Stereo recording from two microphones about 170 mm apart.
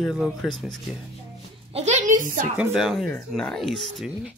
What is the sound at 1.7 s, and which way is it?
Speech, 40° right (ahead or behind).